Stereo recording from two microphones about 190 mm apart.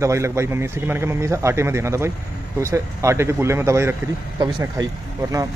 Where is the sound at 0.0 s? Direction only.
15° right (ahead or behind).